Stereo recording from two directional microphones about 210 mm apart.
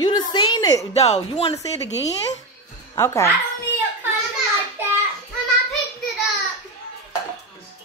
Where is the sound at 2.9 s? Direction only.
15° left (ahead or behind).